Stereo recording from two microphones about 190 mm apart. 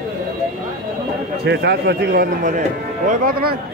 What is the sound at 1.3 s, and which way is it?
Speech, 60° right (ahead or behind).